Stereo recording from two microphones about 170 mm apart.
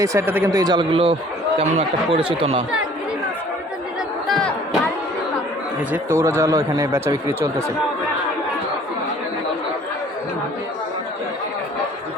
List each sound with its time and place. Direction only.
0.0 s speech: 15° right (ahead or behind); by 2.6 s 35° right (ahead or behind)
4.3 s a sound: 5° left (ahead or behind)
5.9 s speech: 15° right (ahead or behind)